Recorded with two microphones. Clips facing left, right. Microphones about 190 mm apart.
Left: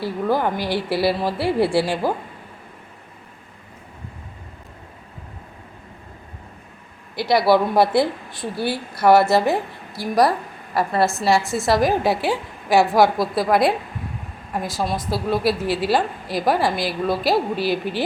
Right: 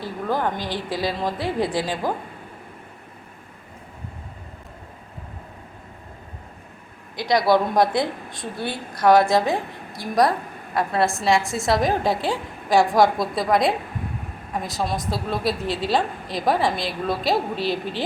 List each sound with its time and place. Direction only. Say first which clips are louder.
0.0 s a woman's voice: left 4 dB; 10° left (ahead or behind)
7.3 s a woman's voice: left 2 dB; 5° left (ahead or behind)